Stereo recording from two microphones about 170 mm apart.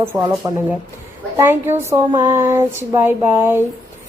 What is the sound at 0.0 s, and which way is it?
A woman's voice, 20° right (ahead or behind).